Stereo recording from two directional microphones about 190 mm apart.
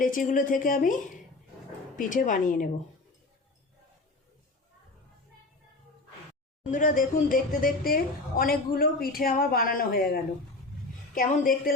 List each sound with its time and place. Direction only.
0.0 s a woman's voice: 45° left (ahead or behind)
2.0 s a woman's voice: 45° left (ahead or behind)
6.7 s a woman's voice: 45° left (ahead or behind)